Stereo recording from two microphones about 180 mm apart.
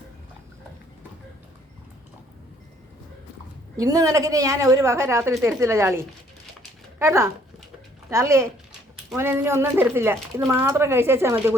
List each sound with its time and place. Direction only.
3.8 s speech: 20° right (ahead or behind)